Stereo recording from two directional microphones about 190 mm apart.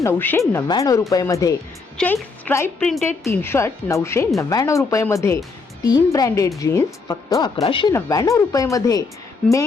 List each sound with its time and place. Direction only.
0.0 s speech: 10° left (ahead or behind)
2.0 s speech: 5° left (ahead or behind); by 7.9 s 25° left (ahead or behind)
7.9 s speech: 15° left (ahead or behind)